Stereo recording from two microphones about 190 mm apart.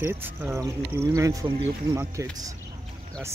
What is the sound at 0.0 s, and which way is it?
Speech, 10° right (ahead or behind).